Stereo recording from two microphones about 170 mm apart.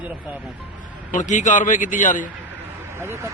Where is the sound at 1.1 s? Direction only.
50° left (ahead or behind).